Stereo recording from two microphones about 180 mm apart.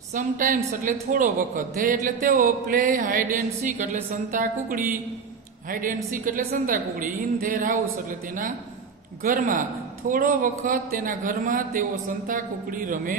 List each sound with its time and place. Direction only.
0.1 s music: 45° right (ahead or behind)